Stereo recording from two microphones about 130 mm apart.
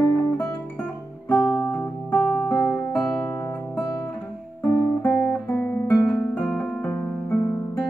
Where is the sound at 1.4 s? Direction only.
25° left (ahead or behind).